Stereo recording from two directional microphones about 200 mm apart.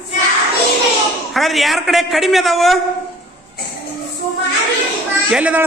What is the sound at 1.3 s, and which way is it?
A man's voice, centre (ahead or behind).